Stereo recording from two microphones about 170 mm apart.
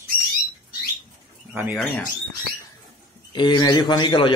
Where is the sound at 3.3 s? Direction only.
25° left (ahead or behind).